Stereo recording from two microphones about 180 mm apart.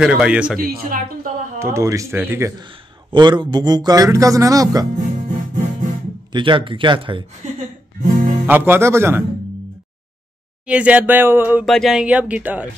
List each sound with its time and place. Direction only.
0.0 s a man's voice: 5° right (ahead or behind)
0.6 s speech: 50° right (ahead or behind)
1.6 s speech: 15° right (ahead or behind)
3.1 s a man's voice: 25° right (ahead or behind)
6.3 s a man's voice: 25° right (ahead or behind)
8.0 s music: 45° right (ahead or behind)
8.5 s speech: 10° right (ahead or behind)
10.7 s speech: 5° right (ahead or behind)
11.6 s speech: centre (ahead or behind)